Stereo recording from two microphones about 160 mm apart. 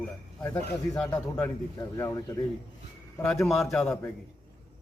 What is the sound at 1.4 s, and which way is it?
Speech, 20° left (ahead or behind).